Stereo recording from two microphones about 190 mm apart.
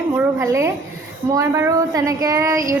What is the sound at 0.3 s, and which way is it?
Speech, 15° right (ahead or behind).